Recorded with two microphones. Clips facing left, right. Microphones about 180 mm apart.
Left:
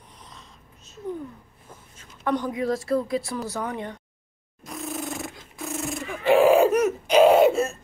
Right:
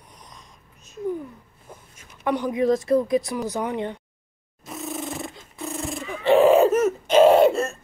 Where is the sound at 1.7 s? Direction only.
15° right (ahead or behind).